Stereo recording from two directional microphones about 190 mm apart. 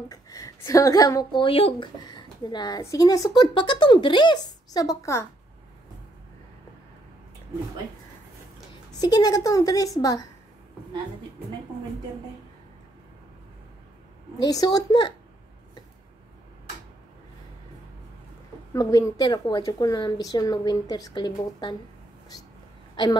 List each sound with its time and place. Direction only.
0.1 s a woman's voice: 20° left (ahead or behind)
9.0 s a woman's voice: 20° left (ahead or behind)
14.4 s a woman's voice: 20° left (ahead or behind)
18.7 s a woman's voice: 20° left (ahead or behind)